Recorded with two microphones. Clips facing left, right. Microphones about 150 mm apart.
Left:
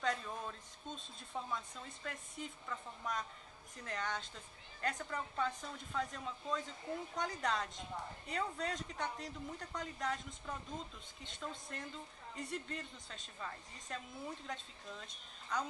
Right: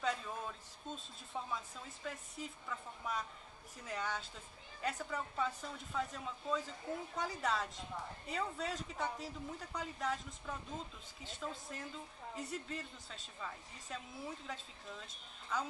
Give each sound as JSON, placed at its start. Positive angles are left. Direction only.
{"t": 0.0, "sound": "a woman's voice", "side_deg": -5}